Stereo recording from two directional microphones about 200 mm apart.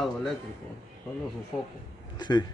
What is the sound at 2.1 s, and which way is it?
Speech, 20° left (ahead or behind).